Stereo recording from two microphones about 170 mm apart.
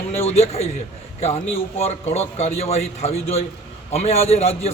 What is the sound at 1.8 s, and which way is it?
A man's voice, 40° left (ahead or behind).